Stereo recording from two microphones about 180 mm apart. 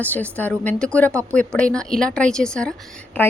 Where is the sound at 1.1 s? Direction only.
15° right (ahead or behind).